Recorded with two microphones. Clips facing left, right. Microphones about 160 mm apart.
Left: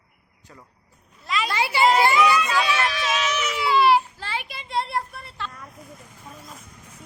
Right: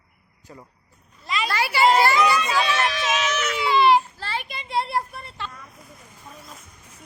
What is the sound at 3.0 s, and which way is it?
Baby cry, 5° right (ahead or behind).